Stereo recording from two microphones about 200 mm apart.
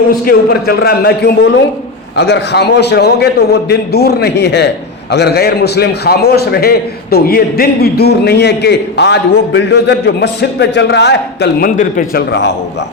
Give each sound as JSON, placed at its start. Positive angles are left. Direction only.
{"t": 0.3, "sound": "a man's voice", "side_deg": 50}
{"t": 11.8, "sound": "a man's voice", "side_deg": 40}